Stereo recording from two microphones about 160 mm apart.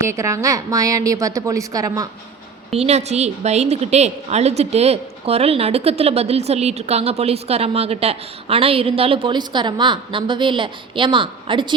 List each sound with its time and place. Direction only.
0.1 s a woman's voice: 20° right (ahead or behind)
2.7 s a woman's voice: 40° right (ahead or behind)